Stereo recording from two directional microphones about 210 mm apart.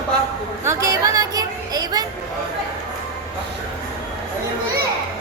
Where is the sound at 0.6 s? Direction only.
15° right (ahead or behind).